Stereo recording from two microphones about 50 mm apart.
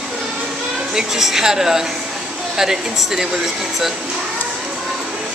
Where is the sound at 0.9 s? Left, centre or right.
Centre.